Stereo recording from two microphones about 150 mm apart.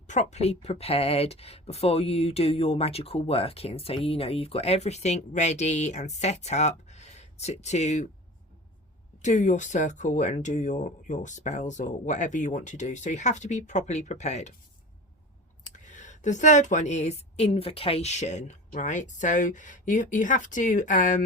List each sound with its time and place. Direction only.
0.1 s speech: 50° left (ahead or behind)
9.1 s speech: 50° left (ahead or behind)
15.6 s speech: 55° left (ahead or behind)